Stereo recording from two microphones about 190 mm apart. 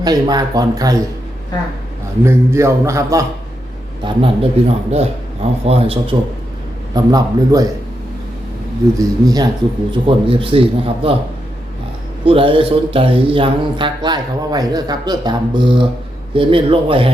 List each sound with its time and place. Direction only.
0.0 s speech: 20° right (ahead or behind)
2.2 s a man's voice: 15° right (ahead or behind)
4.0 s speech: 30° right (ahead or behind)
6.9 s speech: 20° right (ahead or behind)
9.0 s speech: 20° right (ahead or behind)
12.2 s speech: 30° right (ahead or behind)